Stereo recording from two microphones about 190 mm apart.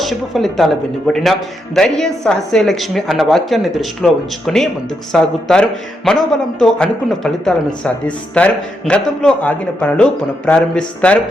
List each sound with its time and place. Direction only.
0.0 s speech: centre (ahead or behind)